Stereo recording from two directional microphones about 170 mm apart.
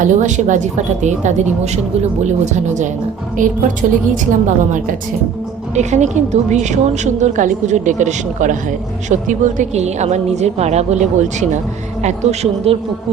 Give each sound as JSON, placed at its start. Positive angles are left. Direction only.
{"t": 0.0, "sound": "a woman's voice", "side_deg": -45}
{"t": 5.7, "sound": "a woman's voice", "side_deg": -45}